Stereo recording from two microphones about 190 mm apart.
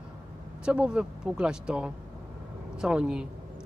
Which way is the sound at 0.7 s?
5° right (ahead or behind).